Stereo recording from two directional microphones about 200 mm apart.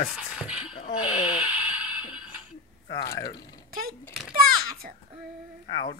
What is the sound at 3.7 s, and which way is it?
Speech, 45° right (ahead or behind).